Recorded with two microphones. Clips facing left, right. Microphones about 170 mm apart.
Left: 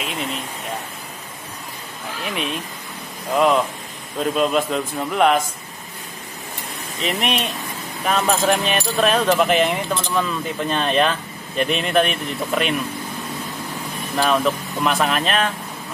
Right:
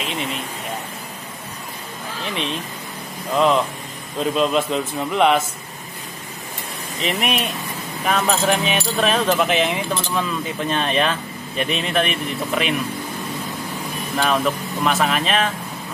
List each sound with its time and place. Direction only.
0.0 s speech: centre (ahead or behind)
3.3 s speech: 5° left (ahead or behind)
7.0 s speech: centre (ahead or behind)
14.1 s speech: centre (ahead or behind)